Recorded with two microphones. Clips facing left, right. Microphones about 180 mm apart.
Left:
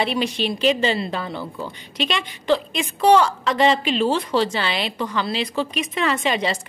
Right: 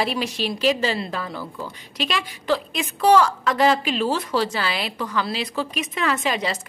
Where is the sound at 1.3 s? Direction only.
25° left (ahead or behind).